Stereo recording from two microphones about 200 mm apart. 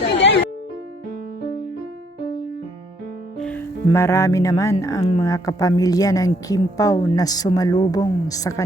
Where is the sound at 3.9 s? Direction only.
10° left (ahead or behind).